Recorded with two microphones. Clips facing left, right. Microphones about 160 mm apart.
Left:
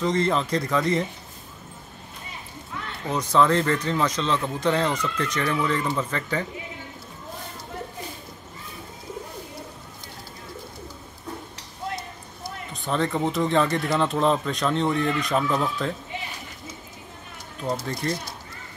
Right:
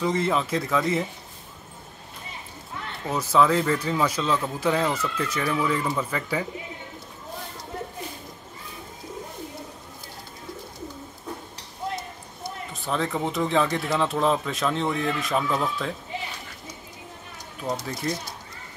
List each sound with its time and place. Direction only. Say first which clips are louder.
0.0 s speech: left 1 dB; 5° right (ahead or behind)
3.1 s speech: even; 5° right (ahead or behind)
12.7 s speech: left 2 dB; centre (ahead or behind)
17.6 s speech: left 2 dB; centre (ahead or behind)